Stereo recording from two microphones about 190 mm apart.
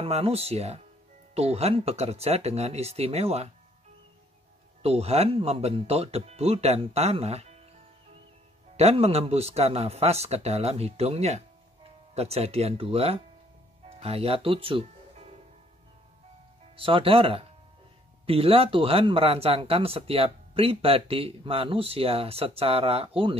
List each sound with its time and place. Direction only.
0.0 s speech: 30° right (ahead or behind)
4.8 s speech: 35° right (ahead or behind)
8.7 s speech: 35° right (ahead or behind)
16.7 s speech: 30° right (ahead or behind)